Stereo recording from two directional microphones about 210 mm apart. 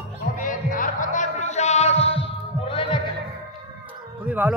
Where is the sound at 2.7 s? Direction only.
25° left (ahead or behind).